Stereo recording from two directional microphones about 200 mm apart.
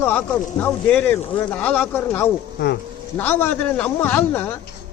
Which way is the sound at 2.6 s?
60° left (ahead or behind).